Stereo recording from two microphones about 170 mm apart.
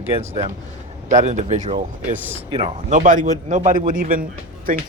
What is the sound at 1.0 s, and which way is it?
Speech, 45° right (ahead or behind).